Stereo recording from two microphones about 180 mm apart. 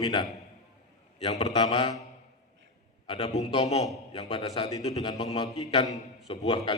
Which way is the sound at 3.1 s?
30° left (ahead or behind).